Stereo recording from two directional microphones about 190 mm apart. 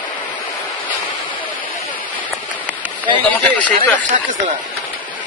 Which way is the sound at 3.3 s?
10° left (ahead or behind).